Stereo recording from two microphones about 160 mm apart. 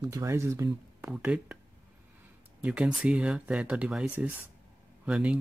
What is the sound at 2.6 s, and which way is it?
Speech, 5° right (ahead or behind).